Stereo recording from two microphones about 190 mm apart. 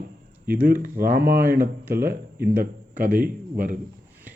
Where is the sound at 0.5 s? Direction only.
10° right (ahead or behind).